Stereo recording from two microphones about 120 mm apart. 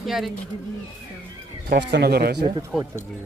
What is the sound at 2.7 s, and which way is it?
Speech, 5° right (ahead or behind).